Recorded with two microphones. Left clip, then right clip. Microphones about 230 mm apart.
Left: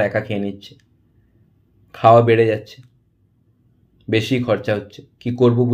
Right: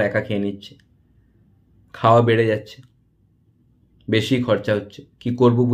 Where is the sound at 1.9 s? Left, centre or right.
Centre.